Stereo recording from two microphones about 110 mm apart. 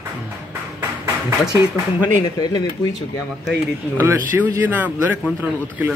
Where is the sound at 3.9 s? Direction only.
25° right (ahead or behind).